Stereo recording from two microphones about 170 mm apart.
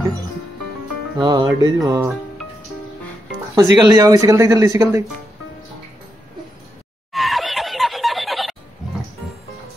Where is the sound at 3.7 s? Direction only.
20° right (ahead or behind).